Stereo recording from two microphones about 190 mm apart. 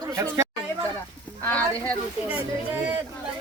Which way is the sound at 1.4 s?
10° left (ahead or behind).